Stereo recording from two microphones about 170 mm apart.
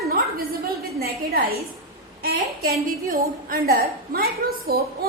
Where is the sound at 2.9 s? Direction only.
60° right (ahead or behind).